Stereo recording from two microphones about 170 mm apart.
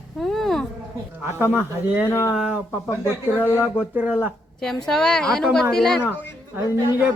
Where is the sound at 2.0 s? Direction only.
15° left (ahead or behind).